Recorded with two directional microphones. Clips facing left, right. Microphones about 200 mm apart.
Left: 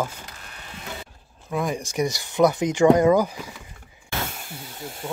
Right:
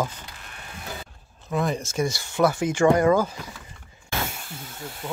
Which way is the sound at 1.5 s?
10° left (ahead or behind).